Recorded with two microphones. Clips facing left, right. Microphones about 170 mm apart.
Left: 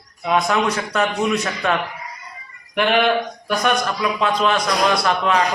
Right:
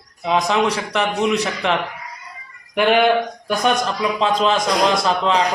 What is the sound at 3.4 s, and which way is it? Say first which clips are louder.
A man's voice: even; 30° right (ahead or behind).